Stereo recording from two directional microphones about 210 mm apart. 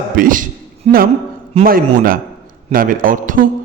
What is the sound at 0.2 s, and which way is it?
A man's voice, 40° right (ahead or behind).